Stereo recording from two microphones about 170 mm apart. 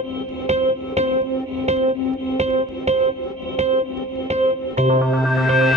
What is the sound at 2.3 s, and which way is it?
Music, 40° right (ahead or behind).